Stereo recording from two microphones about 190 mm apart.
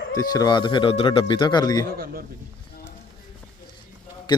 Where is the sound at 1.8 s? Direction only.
50° right (ahead or behind).